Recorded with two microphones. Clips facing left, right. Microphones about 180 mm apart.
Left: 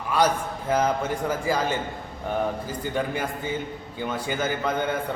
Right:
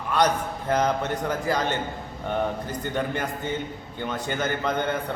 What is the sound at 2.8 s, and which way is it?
A man's voice, 10° left (ahead or behind).